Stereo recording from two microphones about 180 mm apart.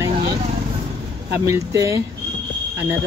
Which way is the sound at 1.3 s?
15° right (ahead or behind).